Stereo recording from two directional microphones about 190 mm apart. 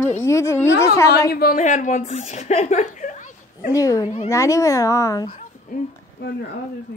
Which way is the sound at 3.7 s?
15° left (ahead or behind).